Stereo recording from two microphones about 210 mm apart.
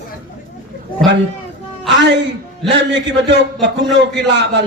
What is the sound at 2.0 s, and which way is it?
A man's voice, 55° right (ahead or behind).